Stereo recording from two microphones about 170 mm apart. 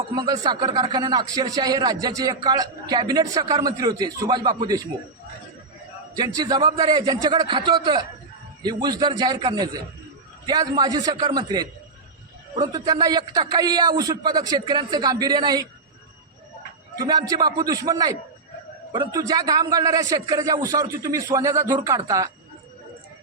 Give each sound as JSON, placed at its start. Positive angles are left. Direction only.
{"t": 0.1, "sound": "a man's voice", "side_deg": -25}
{"t": 6.1, "sound": "a man's voice", "side_deg": -25}
{"t": 12.7, "sound": "a man's voice", "side_deg": -25}
{"t": 17.0, "sound": "a man's voice", "side_deg": -25}